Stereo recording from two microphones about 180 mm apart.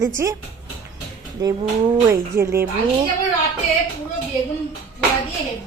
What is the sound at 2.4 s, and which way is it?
Speech, 15° right (ahead or behind).